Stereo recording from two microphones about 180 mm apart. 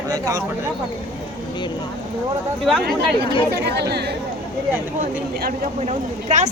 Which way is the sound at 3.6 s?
70° right (ahead or behind).